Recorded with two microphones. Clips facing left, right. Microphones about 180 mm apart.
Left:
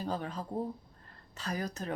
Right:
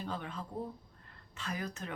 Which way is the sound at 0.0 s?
40° left (ahead or behind).